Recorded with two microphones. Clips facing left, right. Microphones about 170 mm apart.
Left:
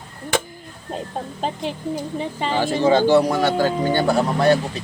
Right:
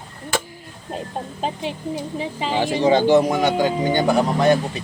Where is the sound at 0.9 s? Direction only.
Centre (ahead or behind).